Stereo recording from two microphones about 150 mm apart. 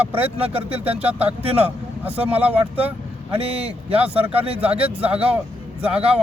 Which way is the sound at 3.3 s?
40° right (ahead or behind).